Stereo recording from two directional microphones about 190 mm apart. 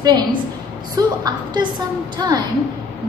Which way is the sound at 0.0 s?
20° right (ahead or behind).